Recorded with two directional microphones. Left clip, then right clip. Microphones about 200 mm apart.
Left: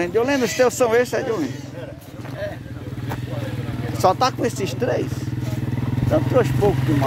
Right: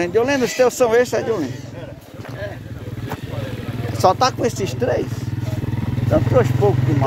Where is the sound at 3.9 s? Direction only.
5° right (ahead or behind).